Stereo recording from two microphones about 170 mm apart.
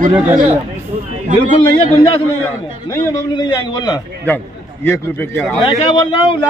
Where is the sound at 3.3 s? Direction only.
25° left (ahead or behind).